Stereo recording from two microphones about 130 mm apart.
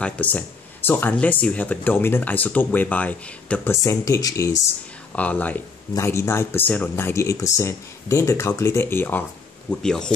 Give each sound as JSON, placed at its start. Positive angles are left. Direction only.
{"t": 0.0, "sound": "speech", "side_deg": 10}
{"t": 3.8, "sound": "speech", "side_deg": 25}
{"t": 5.1, "sound": "speech", "side_deg": 15}